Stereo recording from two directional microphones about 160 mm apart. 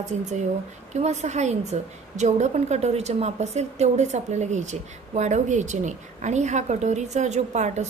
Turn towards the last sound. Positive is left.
turn(degrees=-45)  # may be behind; listen again after turning